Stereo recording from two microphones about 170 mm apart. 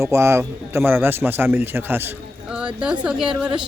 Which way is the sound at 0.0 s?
15° right (ahead or behind).